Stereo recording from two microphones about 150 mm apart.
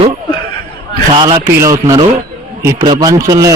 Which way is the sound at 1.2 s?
25° right (ahead or behind).